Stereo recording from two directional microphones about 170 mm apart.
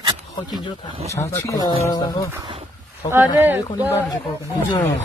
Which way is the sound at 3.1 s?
15° right (ahead or behind).